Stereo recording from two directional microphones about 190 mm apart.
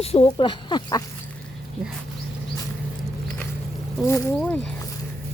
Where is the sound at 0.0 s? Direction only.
30° left (ahead or behind).